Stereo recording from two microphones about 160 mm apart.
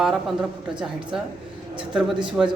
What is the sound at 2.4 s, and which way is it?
Speech, centre (ahead or behind).